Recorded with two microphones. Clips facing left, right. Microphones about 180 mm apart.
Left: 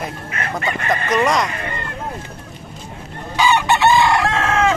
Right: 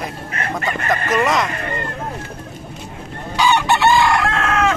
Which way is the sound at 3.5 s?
20° left (ahead or behind).